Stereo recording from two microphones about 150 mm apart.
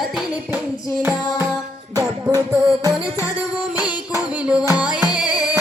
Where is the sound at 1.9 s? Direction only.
25° right (ahead or behind).